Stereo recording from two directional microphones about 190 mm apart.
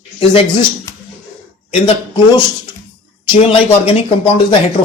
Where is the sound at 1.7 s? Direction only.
25° left (ahead or behind).